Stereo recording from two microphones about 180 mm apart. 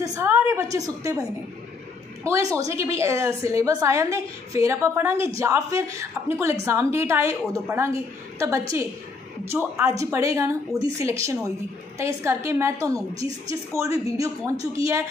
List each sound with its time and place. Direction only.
0.0 s a woman's voice: 15° right (ahead or behind)
2.5 s a woman's voice: 15° right (ahead or behind)